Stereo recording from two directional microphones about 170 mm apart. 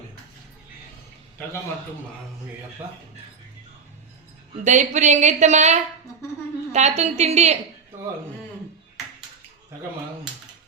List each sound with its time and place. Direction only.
4.6 s a woman's voice: 45° right (ahead or behind)